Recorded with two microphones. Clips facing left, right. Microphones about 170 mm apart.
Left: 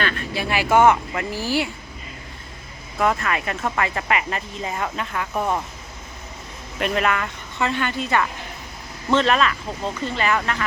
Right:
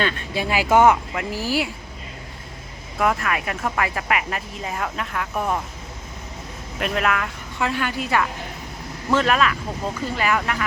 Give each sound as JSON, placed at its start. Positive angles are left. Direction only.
{"t": 0.0, "sound": "speech", "side_deg": -15}
{"t": 1.5, "sound": "speech", "side_deg": -5}
{"t": 3.0, "sound": "speech", "side_deg": -5}
{"t": 6.7, "sound": "speech", "side_deg": 0}